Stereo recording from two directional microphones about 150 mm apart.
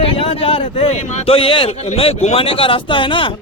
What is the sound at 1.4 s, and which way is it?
A man's voice, 35° left (ahead or behind).